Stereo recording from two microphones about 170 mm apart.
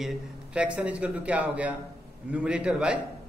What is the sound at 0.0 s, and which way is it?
A man's voice, 5° right (ahead or behind).